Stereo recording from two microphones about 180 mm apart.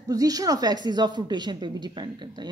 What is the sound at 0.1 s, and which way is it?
Speech, 20° right (ahead or behind).